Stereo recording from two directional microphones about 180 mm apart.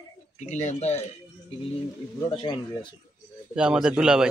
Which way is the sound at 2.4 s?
25° left (ahead or behind).